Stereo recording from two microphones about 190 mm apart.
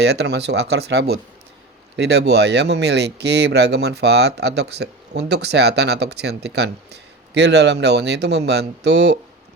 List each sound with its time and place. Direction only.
0.0 s speech: 60° right (ahead or behind)